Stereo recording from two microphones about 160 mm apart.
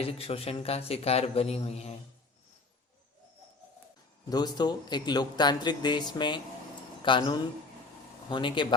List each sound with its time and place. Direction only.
0.0 s a man's voice: 35° left (ahead or behind)
4.3 s a man's voice: 25° left (ahead or behind)